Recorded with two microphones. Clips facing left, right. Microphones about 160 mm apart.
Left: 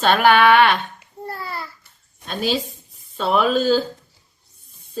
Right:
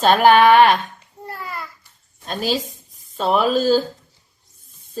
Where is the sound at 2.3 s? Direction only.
40° right (ahead or behind).